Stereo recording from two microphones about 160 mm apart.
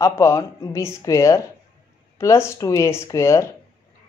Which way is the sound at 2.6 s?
20° left (ahead or behind).